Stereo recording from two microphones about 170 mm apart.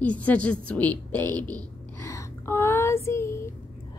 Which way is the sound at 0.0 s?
10° left (ahead or behind).